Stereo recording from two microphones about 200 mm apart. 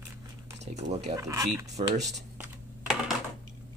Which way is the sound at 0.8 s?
35° right (ahead or behind).